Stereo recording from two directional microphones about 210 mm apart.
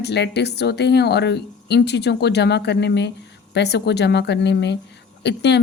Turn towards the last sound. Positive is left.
turn(degrees=55)  # may be behind; listen again after turning